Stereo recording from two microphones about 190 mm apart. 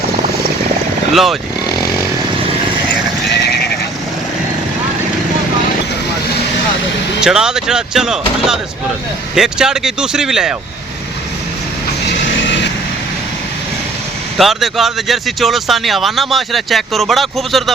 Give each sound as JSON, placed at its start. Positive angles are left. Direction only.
{"t": 1.1, "sound": "speech", "side_deg": 0}
{"t": 3.3, "sound": "sheep", "side_deg": 60}
{"t": 7.2, "sound": "speech", "side_deg": -5}
{"t": 14.3, "sound": "speech", "side_deg": 0}